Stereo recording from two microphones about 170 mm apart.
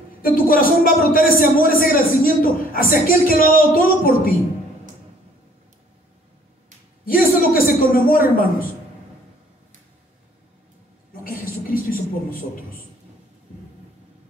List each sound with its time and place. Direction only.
0.2 s a man's voice: 60° left (ahead or behind)
7.1 s a man's voice: 60° left (ahead or behind)
11.2 s a sound: 55° left (ahead or behind)